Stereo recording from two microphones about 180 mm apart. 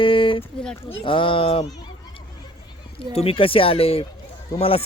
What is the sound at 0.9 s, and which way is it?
Speech, 30° left (ahead or behind).